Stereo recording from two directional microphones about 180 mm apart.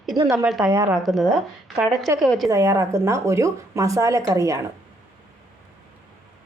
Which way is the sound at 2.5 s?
15° right (ahead or behind).